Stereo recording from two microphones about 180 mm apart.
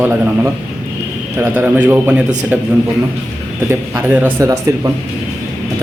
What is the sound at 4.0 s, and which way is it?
Speech, 10° right (ahead or behind).